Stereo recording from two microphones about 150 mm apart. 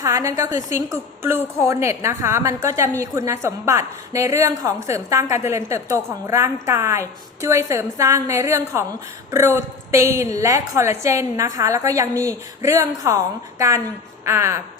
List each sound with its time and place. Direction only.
0.0 s a woman's voice: 20° right (ahead or behind)
14.3 s music: 20° right (ahead or behind)